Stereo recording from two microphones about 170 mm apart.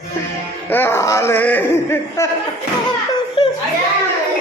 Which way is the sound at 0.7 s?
15° left (ahead or behind).